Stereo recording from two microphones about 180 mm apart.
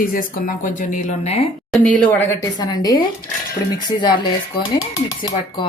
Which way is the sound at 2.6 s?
20° left (ahead or behind).